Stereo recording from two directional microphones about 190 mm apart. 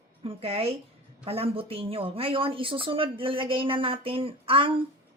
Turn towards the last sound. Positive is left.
turn(degrees=-30)  # may be behind; listen again after turning